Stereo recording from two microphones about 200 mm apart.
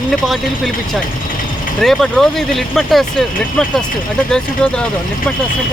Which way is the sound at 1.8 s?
Centre (ahead or behind).